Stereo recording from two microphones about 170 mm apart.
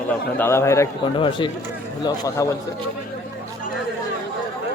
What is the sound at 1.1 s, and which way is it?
A man's voice, 30° left (ahead or behind).